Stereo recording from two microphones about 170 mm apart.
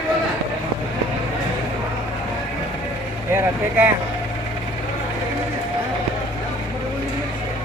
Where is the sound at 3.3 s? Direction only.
10° right (ahead or behind).